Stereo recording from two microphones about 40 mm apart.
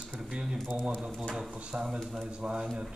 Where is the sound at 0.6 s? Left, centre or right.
Left.